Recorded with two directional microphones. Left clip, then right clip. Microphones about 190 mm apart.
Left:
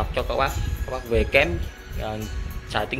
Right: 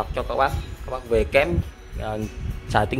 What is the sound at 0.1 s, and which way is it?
A man's voice, 15° right (ahead or behind).